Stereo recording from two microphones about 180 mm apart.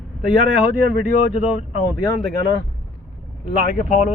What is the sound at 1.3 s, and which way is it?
Speech, 35° left (ahead or behind).